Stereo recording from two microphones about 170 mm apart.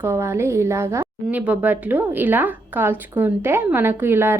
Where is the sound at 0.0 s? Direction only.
15° right (ahead or behind).